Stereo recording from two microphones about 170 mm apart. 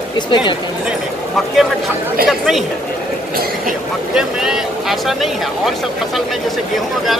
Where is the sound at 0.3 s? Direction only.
25° left (ahead or behind).